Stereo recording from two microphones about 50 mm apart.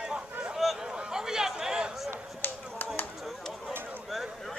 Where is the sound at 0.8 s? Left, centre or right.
Centre.